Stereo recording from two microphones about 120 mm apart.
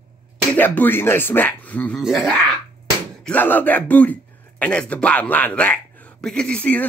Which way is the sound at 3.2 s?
15° left (ahead or behind).